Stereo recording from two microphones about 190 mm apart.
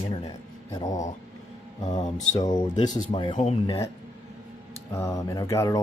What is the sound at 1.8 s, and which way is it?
Speech, 35° left (ahead or behind).